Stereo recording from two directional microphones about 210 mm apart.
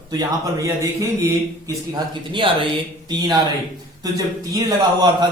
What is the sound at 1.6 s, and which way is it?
Speech, 20° right (ahead or behind).